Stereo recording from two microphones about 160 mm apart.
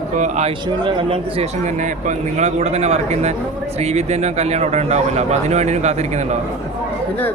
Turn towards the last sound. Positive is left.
turn(degrees=-45)  # may be behind; listen again after turning